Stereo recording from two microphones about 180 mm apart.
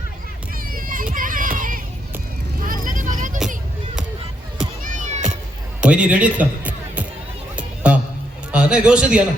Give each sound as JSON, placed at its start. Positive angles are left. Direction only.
{"t": 0.5, "sound": "children playing", "side_deg": -50}
{"t": 2.6, "sound": "vehicle", "side_deg": -50}
{"t": 4.8, "sound": "cat", "side_deg": -40}
{"t": 5.8, "sound": "music", "side_deg": -5}
{"t": 8.5, "sound": "a man's voice", "side_deg": -5}